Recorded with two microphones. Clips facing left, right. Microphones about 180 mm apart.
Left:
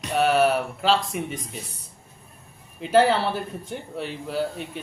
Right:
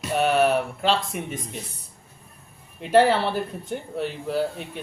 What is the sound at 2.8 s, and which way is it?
Speech, centre (ahead or behind).